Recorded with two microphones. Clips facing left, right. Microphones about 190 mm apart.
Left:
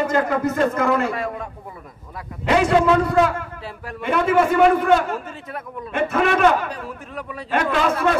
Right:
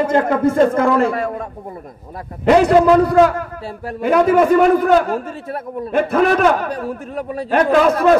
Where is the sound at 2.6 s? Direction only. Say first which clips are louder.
Right 5 dB; 35° right (ahead or behind).